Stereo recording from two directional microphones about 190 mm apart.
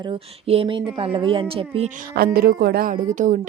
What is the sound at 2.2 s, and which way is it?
Speech, 55° right (ahead or behind).